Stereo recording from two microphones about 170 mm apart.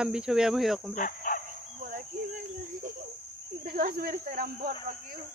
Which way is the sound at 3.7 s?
55° right (ahead or behind).